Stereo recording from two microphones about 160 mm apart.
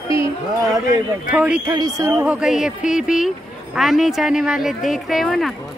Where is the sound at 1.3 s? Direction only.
5° right (ahead or behind).